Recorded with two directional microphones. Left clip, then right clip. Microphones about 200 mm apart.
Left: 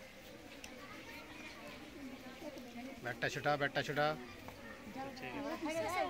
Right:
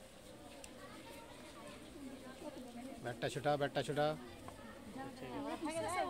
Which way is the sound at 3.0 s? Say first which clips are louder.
Left 2 dB; 30° right (ahead or behind).